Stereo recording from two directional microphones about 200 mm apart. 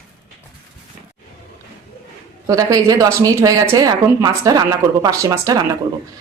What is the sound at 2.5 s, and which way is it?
Speech, 15° right (ahead or behind).